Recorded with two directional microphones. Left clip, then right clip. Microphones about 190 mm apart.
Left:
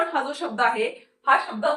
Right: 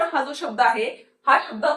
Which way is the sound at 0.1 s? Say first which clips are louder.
Right 1 dB; 20° left (ahead or behind).